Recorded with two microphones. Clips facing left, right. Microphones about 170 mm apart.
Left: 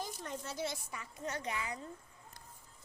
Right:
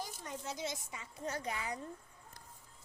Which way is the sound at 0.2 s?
15° right (ahead or behind).